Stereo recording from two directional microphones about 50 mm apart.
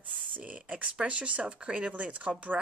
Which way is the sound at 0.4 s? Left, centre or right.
Right.